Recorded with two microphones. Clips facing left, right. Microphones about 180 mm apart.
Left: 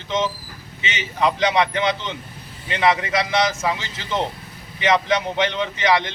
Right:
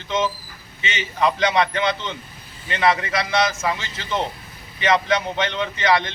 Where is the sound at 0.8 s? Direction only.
20° left (ahead or behind).